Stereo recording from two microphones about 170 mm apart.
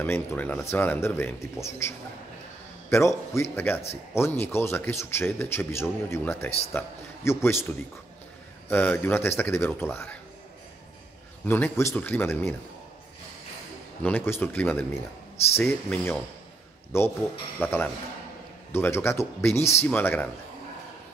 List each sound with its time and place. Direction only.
0.0 s a man's voice: 10° left (ahead or behind)
11.4 s a man's voice: 15° left (ahead or behind)
14.0 s a man's voice: 10° left (ahead or behind)